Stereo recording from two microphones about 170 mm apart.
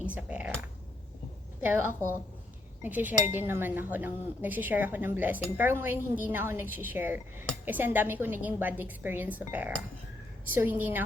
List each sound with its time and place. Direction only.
0.0 s cutlery: 10° right (ahead or behind)
1.6 s speech: 15° right (ahead or behind)